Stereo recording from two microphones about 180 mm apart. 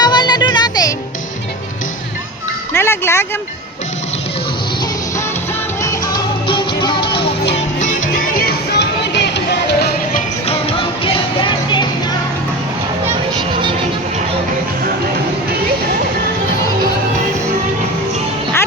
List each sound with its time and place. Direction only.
0.0 s music: 25° left (ahead or behind)
2.7 s music: 15° left (ahead or behind)
5.8 s music: 15° left (ahead or behind)
8.0 s music: 50° left (ahead or behind); by 9.9 s 70° left (ahead or behind)
10.4 s music: 30° left (ahead or behind)